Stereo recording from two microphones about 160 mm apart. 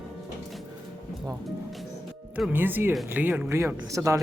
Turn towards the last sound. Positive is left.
turn(degrees=-20)  # may be behind; listen again after turning